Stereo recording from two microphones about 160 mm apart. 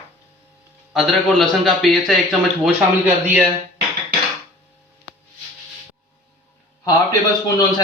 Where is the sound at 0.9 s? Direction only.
Centre (ahead or behind).